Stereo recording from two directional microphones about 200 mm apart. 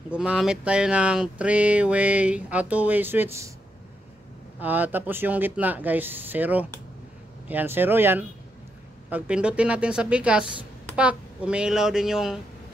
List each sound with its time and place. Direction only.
0.1 s speech: 5° right (ahead or behind)
4.6 s a woman's voice: 10° right (ahead or behind)